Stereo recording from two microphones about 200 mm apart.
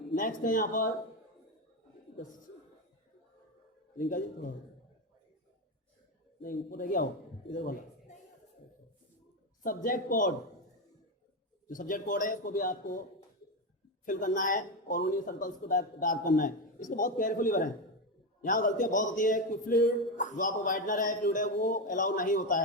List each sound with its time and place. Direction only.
0.2 s speech: 40° left (ahead or behind)
3.9 s a man's voice: 40° left (ahead or behind)
6.4 s a man's voice: 45° left (ahead or behind)
9.6 s speech: 45° left (ahead or behind)
11.7 s a man's voice: 40° left (ahead or behind)
14.0 s a man's voice: 40° left (ahead or behind)